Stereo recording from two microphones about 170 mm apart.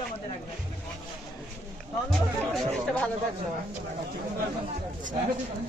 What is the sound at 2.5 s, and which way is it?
Speech, 5° left (ahead or behind).